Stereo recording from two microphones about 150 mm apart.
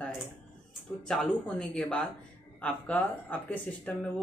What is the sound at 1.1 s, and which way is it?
A man's voice, 5° left (ahead or behind).